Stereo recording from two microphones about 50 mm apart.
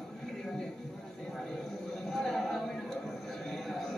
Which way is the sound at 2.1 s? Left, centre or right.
Centre.